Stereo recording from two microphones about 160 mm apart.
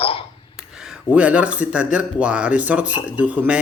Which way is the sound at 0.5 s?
5° right (ahead or behind).